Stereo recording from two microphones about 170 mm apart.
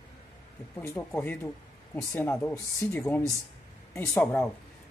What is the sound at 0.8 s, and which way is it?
Speech, 10° left (ahead or behind).